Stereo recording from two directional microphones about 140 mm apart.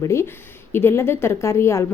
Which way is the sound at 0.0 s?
20° left (ahead or behind).